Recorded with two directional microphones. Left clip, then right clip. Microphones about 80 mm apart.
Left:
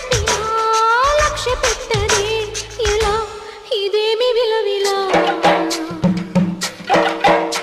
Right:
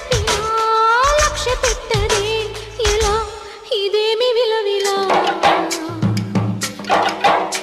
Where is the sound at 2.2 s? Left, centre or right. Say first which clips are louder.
Even; left.